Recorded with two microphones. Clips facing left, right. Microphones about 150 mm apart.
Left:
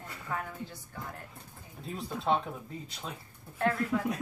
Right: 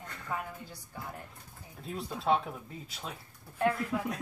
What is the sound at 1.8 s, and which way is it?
Speech, centre (ahead or behind).